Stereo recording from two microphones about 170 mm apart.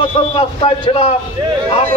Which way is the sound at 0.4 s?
30° left (ahead or behind).